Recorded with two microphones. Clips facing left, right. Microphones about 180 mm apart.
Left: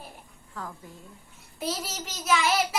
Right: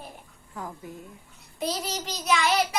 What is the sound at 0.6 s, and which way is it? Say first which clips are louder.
Speech: right 2 dB; 20° right (ahead or behind).